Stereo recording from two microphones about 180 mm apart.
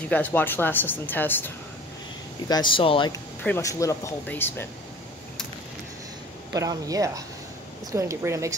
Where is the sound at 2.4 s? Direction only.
25° left (ahead or behind).